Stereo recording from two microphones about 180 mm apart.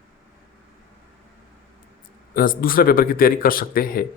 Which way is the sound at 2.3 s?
50° left (ahead or behind).